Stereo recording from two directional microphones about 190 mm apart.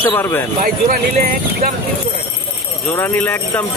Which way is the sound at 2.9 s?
10° left (ahead or behind).